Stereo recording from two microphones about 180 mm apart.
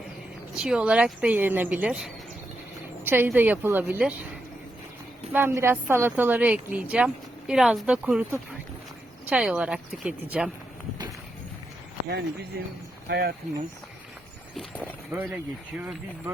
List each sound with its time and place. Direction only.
0.5 s a woman's voice: 5° right (ahead or behind)
3.0 s a sound: 10° right (ahead or behind)
3.2 s a woman's voice: 10° right (ahead or behind)
5.3 s a woman's voice: 15° right (ahead or behind)
12.0 s speech: 65° right (ahead or behind)
14.5 s speech: 5° left (ahead or behind)
15.1 s a woman's voice: 10° right (ahead or behind)